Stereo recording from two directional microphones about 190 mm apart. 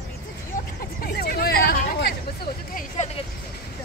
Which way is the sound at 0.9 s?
55° left (ahead or behind).